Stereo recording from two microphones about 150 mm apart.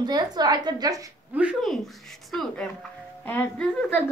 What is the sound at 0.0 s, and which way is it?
A woman's voice, 25° right (ahead or behind).